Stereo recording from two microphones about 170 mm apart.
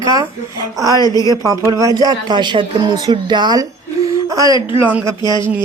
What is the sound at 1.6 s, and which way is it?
Speech, 20° right (ahead or behind).